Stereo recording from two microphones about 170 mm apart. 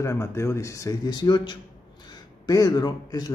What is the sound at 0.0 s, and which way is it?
Speech, 15° left (ahead or behind).